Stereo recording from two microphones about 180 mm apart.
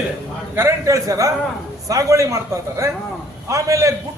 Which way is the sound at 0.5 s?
15° right (ahead or behind).